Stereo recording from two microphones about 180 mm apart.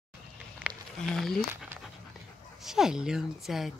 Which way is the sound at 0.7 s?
Centre (ahead or behind).